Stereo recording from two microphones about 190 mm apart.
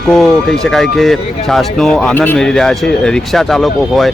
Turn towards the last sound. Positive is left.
turn(degrees=0)  # may be behind; listen again after turning